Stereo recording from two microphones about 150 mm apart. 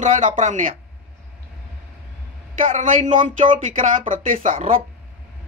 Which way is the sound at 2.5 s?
55° right (ahead or behind).